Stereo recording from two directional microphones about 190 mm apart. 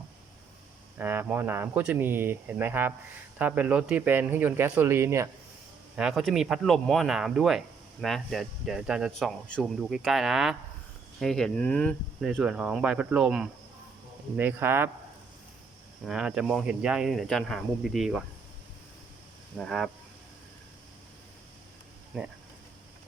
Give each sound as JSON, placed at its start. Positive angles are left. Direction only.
{"t": 0.9, "sound": "speech", "side_deg": -10}
{"t": 6.0, "sound": "speech", "side_deg": 0}
{"t": 16.0, "sound": "speech", "side_deg": -5}
{"t": 19.5, "sound": "speech", "side_deg": 0}
{"t": 22.1, "sound": "speech", "side_deg": 0}